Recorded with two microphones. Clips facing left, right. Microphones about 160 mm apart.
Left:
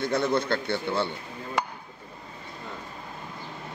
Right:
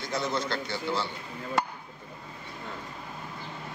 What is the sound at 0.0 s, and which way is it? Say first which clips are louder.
A man's voice: left 6 dB; 60° left (ahead or behind).